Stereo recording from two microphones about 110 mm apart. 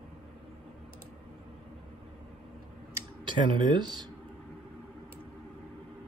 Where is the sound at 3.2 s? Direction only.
45° right (ahead or behind).